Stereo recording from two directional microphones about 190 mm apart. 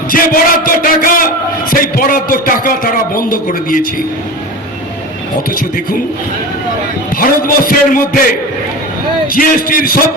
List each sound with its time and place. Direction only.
0.1 s a sound: 50° left (ahead or behind)
1.7 s a man's voice: 45° left (ahead or behind)
7.2 s a man's voice: 50° left (ahead or behind)
9.3 s a man's voice: 50° left (ahead or behind)